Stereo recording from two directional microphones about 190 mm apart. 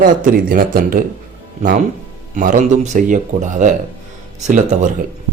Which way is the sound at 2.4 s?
40° right (ahead or behind).